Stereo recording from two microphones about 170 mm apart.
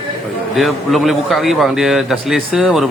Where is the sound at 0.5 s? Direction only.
Centre (ahead or behind).